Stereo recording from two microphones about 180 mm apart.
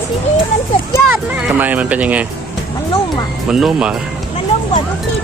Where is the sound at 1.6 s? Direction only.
10° right (ahead or behind).